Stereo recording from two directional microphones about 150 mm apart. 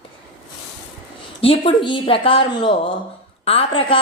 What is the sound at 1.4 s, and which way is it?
A woman's voice, 35° left (ahead or behind).